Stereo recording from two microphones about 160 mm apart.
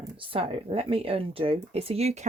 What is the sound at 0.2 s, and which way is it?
Speech, 35° right (ahead or behind).